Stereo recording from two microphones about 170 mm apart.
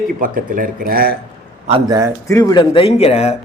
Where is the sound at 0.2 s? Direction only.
55° right (ahead or behind).